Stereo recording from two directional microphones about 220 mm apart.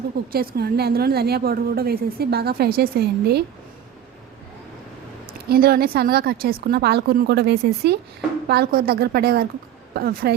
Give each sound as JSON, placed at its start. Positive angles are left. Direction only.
{"t": 0.3, "sound": "a woman's voice", "side_deg": -45}
{"t": 5.2, "sound": "a woman's voice", "side_deg": -45}